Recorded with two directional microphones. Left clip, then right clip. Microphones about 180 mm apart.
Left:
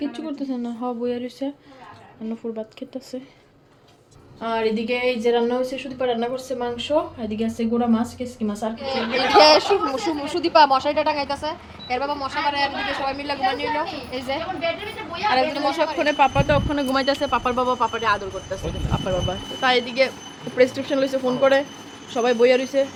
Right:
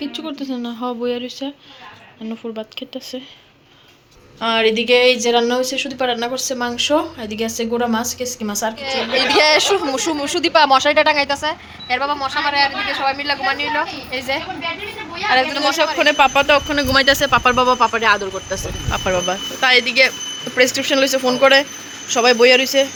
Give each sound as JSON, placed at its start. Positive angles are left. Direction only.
{"t": 0.0, "sound": "speech", "side_deg": 0}
{"t": 2.6, "sound": "speech", "side_deg": 5}
{"t": 4.4, "sound": "speech", "side_deg": -10}
{"t": 8.8, "sound": "speech", "side_deg": -20}
{"t": 14.1, "sound": "a woman's voice", "side_deg": -20}
{"t": 15.3, "sound": "speech", "side_deg": 0}
{"t": 17.5, "sound": "speech", "side_deg": -25}
{"t": 18.9, "sound": "speech", "side_deg": -10}
{"t": 19.5, "sound": "speech", "side_deg": 0}